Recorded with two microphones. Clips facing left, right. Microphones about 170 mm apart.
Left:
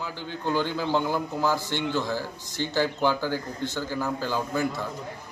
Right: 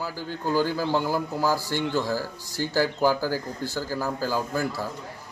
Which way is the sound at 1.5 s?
40° right (ahead or behind).